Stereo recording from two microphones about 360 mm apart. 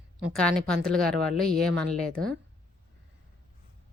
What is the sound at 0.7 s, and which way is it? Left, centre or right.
Speech, centre.